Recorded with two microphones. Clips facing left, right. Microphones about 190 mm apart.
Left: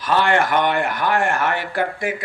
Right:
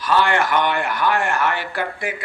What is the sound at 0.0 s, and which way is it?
Speech, 50° left (ahead or behind).